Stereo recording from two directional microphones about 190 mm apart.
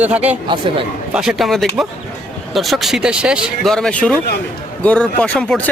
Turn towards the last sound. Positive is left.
turn(degrees=5)  # may be behind; listen again after turning